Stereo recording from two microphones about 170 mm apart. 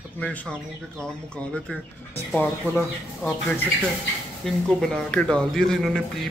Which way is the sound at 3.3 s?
10° left (ahead or behind).